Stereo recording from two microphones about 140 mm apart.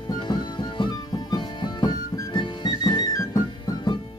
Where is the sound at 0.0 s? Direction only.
30° left (ahead or behind).